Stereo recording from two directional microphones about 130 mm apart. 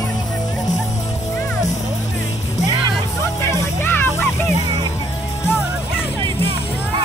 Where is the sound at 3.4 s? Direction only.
25° left (ahead or behind).